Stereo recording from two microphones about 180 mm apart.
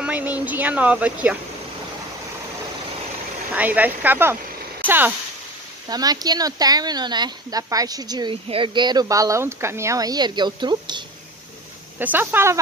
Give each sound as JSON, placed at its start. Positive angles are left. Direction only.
{"t": 0.0, "sound": "speech", "side_deg": -10}
{"t": 3.5, "sound": "speech", "side_deg": -10}
{"t": 5.9, "sound": "speech", "side_deg": -20}
{"t": 12.0, "sound": "speech", "side_deg": -10}